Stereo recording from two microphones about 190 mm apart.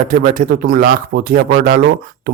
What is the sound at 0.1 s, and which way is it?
A man's voice, 45° right (ahead or behind).